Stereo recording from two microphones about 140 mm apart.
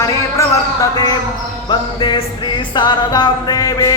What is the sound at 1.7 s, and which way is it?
A woman's voice, 35° left (ahead or behind).